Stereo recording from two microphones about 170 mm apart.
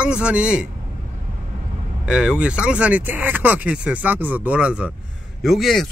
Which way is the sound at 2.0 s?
5° right (ahead or behind).